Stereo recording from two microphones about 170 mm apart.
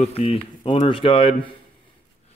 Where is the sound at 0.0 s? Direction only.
35° left (ahead or behind).